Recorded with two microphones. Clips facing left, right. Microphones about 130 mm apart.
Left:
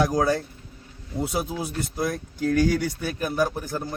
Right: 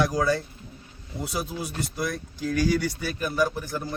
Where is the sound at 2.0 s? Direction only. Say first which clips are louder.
Left 4 dB; 50° left (ahead or behind).